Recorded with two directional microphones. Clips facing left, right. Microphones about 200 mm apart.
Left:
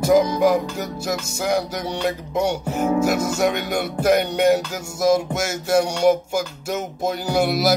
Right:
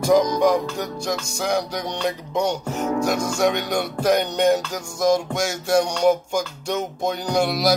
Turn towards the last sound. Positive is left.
turn(degrees=5)  # may be behind; listen again after turning